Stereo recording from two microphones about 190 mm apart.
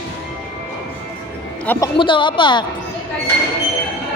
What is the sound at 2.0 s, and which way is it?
Speech, 25° left (ahead or behind).